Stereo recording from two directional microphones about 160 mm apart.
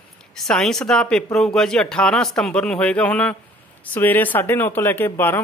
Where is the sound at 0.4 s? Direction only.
5° left (ahead or behind).